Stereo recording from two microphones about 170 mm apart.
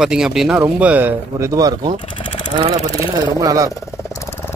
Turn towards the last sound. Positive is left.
turn(degrees=-20)  # may be behind; listen again after turning